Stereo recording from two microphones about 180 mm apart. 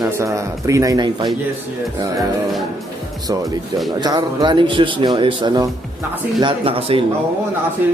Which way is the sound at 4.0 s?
25° right (ahead or behind).